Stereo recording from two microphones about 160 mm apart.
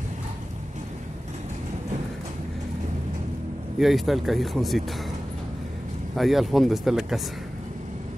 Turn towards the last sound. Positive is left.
turn(degrees=0)  # may be behind; listen again after turning